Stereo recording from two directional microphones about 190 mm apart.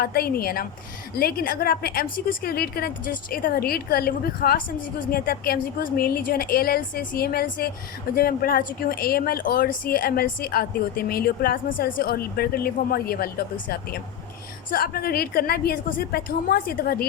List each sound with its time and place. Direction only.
0.0 s speech: 55° left (ahead or behind)